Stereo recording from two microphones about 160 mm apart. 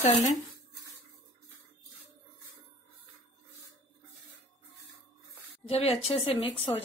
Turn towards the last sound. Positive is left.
turn(degrees=35)  # may be behind; listen again after turning